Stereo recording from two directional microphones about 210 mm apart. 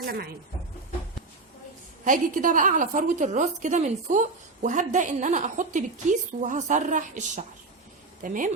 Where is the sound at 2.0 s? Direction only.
40° right (ahead or behind).